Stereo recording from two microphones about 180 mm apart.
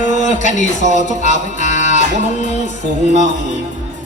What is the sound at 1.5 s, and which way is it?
Music, 40° left (ahead or behind).